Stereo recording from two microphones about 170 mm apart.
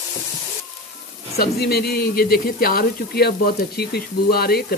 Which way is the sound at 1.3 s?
65° left (ahead or behind).